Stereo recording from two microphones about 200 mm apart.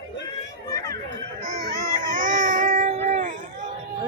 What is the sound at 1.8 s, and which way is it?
Baby cry, 40° right (ahead or behind).